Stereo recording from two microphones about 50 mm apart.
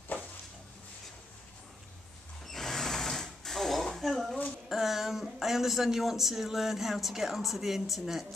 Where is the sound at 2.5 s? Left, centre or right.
Centre.